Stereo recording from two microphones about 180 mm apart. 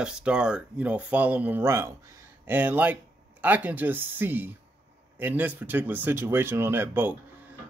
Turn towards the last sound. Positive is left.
turn(degrees=-10)  # may be behind; listen again after turning